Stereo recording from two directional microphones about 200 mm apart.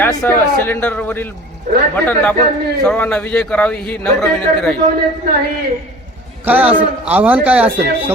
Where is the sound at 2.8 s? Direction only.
5° left (ahead or behind).